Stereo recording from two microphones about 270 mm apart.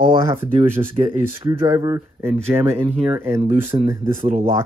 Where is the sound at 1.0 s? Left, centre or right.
Right.